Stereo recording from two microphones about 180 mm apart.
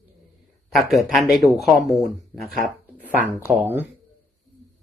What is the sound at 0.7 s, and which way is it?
Speech, centre (ahead or behind).